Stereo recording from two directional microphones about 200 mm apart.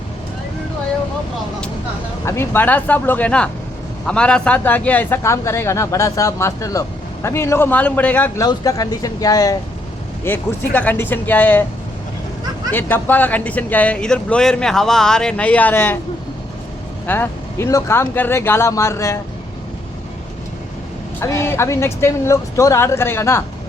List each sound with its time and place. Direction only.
2.2 s speech: 15° left (ahead or behind)
12.7 s speech: 10° left (ahead or behind)
17.1 s speech: 10° left (ahead or behind)
21.2 s speech: 15° left (ahead or behind)